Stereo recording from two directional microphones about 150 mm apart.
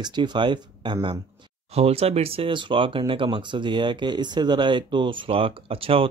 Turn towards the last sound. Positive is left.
turn(degrees=-40)  # may be behind; listen again after turning